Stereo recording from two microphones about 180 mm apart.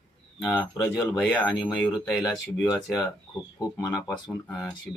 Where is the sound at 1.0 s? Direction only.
5° left (ahead or behind).